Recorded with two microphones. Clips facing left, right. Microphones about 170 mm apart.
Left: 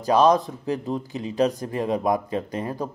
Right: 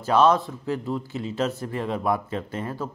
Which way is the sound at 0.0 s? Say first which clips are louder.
Left 1 dB; 15° left (ahead or behind).